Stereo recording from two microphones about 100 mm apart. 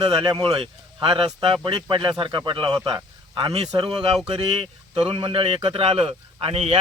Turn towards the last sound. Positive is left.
turn(degrees=-80)